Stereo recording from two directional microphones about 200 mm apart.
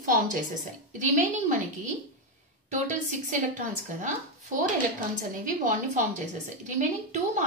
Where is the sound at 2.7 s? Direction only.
40° right (ahead or behind).